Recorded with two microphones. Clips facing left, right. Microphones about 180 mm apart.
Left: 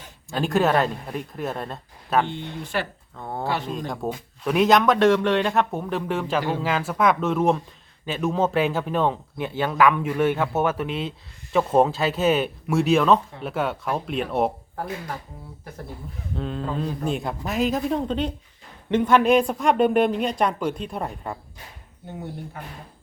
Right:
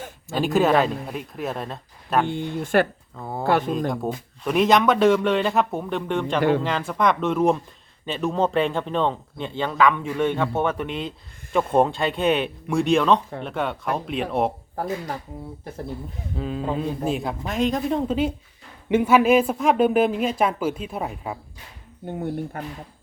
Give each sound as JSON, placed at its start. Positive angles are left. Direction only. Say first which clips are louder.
{"t": 0.3, "sound": "speech", "louder": "right 2 dB", "side_deg": 0}
{"t": 2.3, "sound": "speech", "louder": "right 8 dB", "side_deg": -50}
{"t": 3.2, "sound": "speech", "louder": "right 1 dB", "side_deg": -5}
{"t": 3.4, "sound": "speech", "louder": "right 7 dB", "side_deg": -50}
{"t": 3.7, "sound": "speech", "louder": "right 4 dB", "side_deg": 0}
{"t": 16.3, "sound": "speech", "louder": "right 2 dB", "side_deg": -5}
{"t": 22.5, "sound": "speech", "louder": "right 6 dB", "side_deg": -55}